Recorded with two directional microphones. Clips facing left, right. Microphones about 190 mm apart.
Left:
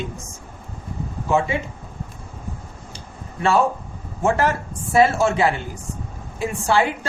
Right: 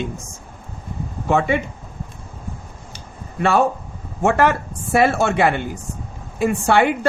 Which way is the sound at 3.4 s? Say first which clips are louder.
Right 1 dB; 60° right (ahead or behind).